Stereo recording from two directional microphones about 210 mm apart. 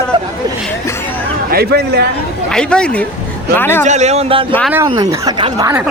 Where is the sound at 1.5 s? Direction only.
50° right (ahead or behind).